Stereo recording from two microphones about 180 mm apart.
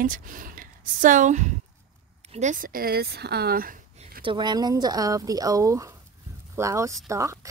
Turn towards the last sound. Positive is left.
turn(degrees=-15)  # may be behind; listen again after turning